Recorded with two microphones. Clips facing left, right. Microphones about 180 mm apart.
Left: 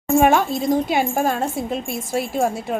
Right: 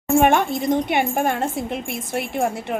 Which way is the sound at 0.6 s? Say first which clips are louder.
Left 1 dB; centre (ahead or behind).